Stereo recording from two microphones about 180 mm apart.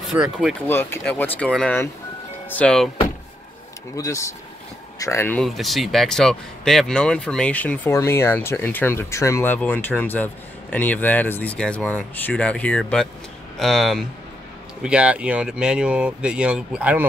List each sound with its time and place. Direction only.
0.1 s speech: 5° right (ahead or behind)
0.7 s speech: 10° left (ahead or behind)
3.9 s speech: 20° left (ahead or behind)
5.4 s speech: centre (ahead or behind)